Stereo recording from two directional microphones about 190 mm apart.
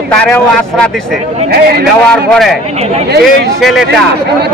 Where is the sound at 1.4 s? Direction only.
55° right (ahead or behind).